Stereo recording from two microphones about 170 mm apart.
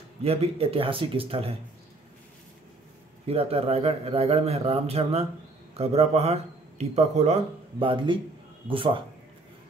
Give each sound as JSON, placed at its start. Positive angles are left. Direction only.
{"t": 0.2, "sound": "a man's voice", "side_deg": -35}
{"t": 3.3, "sound": "a man's voice", "side_deg": -35}